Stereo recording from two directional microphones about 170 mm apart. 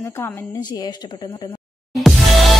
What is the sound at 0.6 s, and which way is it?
Speech, 25° left (ahead or behind).